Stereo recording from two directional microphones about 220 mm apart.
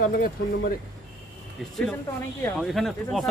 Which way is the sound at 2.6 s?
Centre (ahead or behind).